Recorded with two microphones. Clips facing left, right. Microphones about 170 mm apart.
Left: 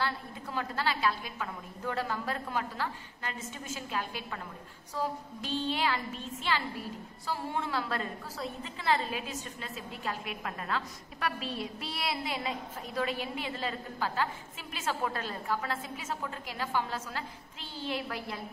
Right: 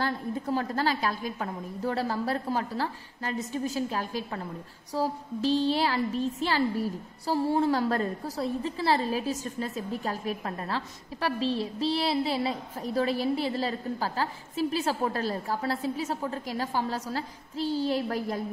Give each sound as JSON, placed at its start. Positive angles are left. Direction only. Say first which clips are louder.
{"t": 0.0, "sound": "a woman's voice", "louder": "right 6 dB", "side_deg": -40}